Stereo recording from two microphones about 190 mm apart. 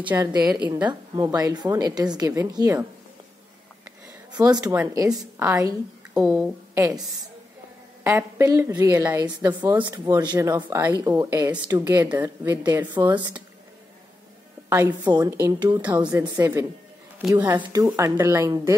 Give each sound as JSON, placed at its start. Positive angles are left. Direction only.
{"t": 0.1, "sound": "a woman's voice", "side_deg": -15}
{"t": 4.3, "sound": "a woman's voice", "side_deg": -20}
{"t": 6.1, "sound": "a woman's voice", "side_deg": -5}
{"t": 12.9, "sound": "a woman's voice", "side_deg": -25}
{"t": 14.7, "sound": "speech", "side_deg": -15}